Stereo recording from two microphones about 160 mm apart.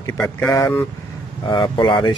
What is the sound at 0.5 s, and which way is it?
Speech, 20° left (ahead or behind).